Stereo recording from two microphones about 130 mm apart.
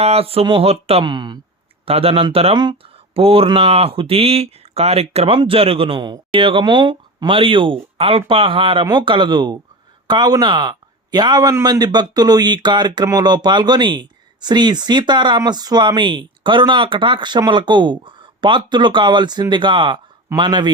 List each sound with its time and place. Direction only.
0.0 s speech: 50° right (ahead or behind)
1.0 s speech: 35° right (ahead or behind)
1.8 s a man's voice: 50° right (ahead or behind)